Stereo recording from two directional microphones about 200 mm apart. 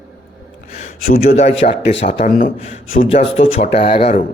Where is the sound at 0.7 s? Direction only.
35° left (ahead or behind).